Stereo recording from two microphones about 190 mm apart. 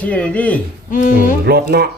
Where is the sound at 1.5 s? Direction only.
55° right (ahead or behind).